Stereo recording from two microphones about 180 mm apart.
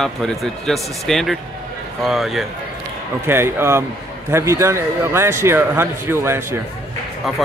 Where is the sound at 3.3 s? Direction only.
15° right (ahead or behind).